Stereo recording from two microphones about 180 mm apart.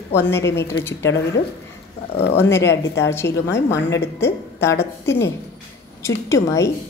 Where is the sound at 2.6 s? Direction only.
75° left (ahead or behind).